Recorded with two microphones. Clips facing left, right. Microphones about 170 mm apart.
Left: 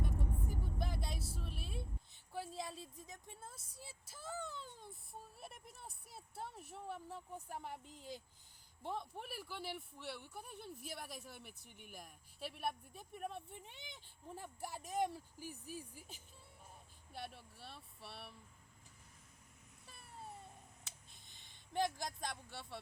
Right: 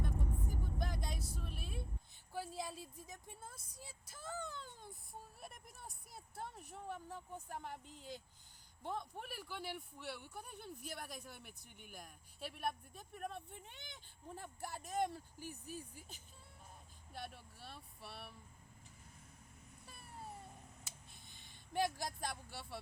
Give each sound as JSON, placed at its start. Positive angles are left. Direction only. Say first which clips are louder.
{"t": 0.8, "sound": "vehicle", "louder": "even", "side_deg": 5}
{"t": 5.4, "sound": "a sound", "louder": "even", "side_deg": 5}
{"t": 7.9, "sound": "speech", "louder": "even", "side_deg": 35}
{"t": 8.8, "sound": "speech", "louder": "even", "side_deg": 0}
{"t": 19.8, "sound": "a sound", "louder": "right 1 dB", "side_deg": 0}
{"t": 21.7, "sound": "speech", "louder": "even", "side_deg": -5}